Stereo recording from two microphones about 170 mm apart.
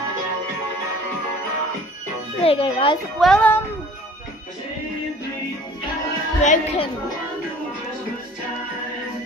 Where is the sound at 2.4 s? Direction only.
35° left (ahead or behind).